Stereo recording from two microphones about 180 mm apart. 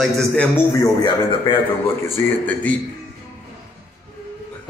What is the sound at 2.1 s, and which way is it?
Speech, 10° left (ahead or behind).